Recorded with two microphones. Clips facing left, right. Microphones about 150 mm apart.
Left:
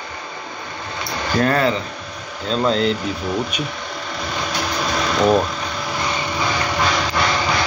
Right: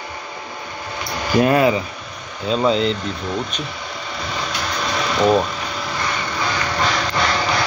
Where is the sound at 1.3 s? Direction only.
15° right (ahead or behind); by 3.6 s 5° left (ahead or behind).